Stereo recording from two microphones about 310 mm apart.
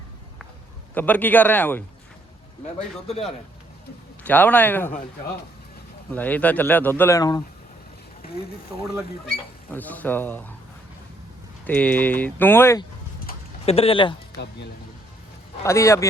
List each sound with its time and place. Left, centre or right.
0.9 s speech: centre
2.7 s a man's voice: centre
4.2 s speech: centre
6.1 s speech: centre
8.2 s speech: left
9.7 s speech: centre
11.6 s speech: centre
13.2 s a sound: centre
15.6 s speech: centre